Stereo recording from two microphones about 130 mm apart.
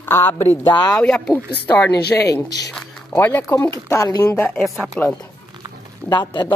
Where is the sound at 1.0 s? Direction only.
10° left (ahead or behind).